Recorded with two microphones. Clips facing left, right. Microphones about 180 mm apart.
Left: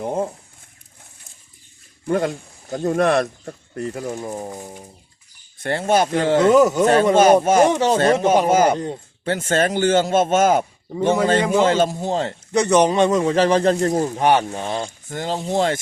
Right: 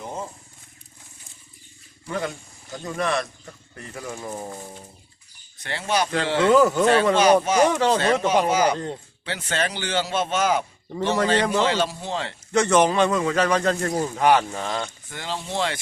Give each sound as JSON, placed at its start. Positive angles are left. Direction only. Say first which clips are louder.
{"t": 0.0, "sound": "speech", "louder": "left 10 dB", "side_deg": 55}
{"t": 2.0, "sound": "speech", "louder": "left 8 dB", "side_deg": 45}
{"t": 4.1, "sound": "speech", "louder": "left 4 dB", "side_deg": 20}
{"t": 5.5, "sound": "speech", "louder": "left 7 dB", "side_deg": 50}
{"t": 6.5, "sound": "speech", "louder": "left 1 dB", "side_deg": 15}
{"t": 6.8, "sound": "speech", "louder": "left 4 dB", "side_deg": 45}
{"t": 7.7, "sound": "speech", "louder": "left 3 dB", "side_deg": 20}
{"t": 7.9, "sound": "speech", "louder": "left 4 dB", "side_deg": 45}
{"t": 11.3, "sound": "speech", "louder": "left 4 dB", "side_deg": 10}
{"t": 11.6, "sound": "speech", "louder": "left 6 dB", "side_deg": 45}
{"t": 12.5, "sound": "speech", "louder": "left 3 dB", "side_deg": 15}
{"t": 15.1, "sound": "speech", "louder": "left 8 dB", "side_deg": 45}